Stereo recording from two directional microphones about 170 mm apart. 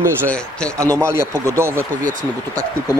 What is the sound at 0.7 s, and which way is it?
Speech, 15° right (ahead or behind).